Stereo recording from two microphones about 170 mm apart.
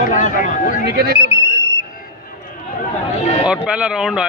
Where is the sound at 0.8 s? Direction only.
65° right (ahead or behind).